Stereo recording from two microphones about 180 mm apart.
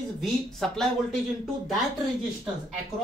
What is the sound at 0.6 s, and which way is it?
Speech, centre (ahead or behind).